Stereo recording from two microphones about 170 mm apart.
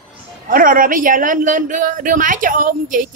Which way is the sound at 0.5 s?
55° right (ahead or behind).